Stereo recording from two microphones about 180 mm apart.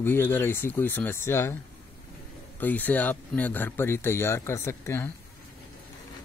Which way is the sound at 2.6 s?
10° left (ahead or behind).